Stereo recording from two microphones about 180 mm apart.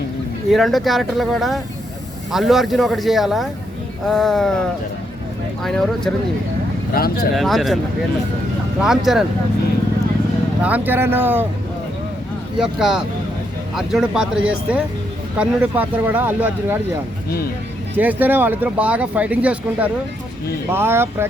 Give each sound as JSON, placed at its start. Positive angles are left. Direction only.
{"t": 0.5, "sound": "speech", "side_deg": 0}
{"t": 5.6, "sound": "speech", "side_deg": 0}
{"t": 6.9, "sound": "speech", "side_deg": 55}
{"t": 7.3, "sound": "speech", "side_deg": 0}
{"t": 8.8, "sound": "speech", "side_deg": 0}
{"t": 10.6, "sound": "speech", "side_deg": -10}
{"t": 12.5, "sound": "speech", "side_deg": 0}
{"t": 17.9, "sound": "speech", "side_deg": -10}